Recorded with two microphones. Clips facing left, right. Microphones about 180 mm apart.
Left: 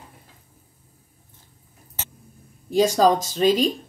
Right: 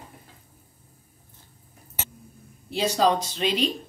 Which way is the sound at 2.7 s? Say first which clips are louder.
Left 5 dB; 45° left (ahead or behind).